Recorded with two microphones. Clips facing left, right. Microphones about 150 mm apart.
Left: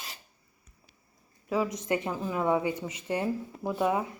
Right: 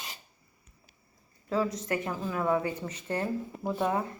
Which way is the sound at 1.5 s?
15° left (ahead or behind).